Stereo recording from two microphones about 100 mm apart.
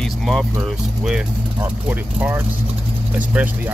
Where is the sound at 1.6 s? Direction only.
20° right (ahead or behind).